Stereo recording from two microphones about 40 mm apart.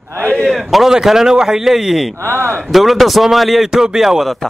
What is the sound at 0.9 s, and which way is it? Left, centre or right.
Speech, centre.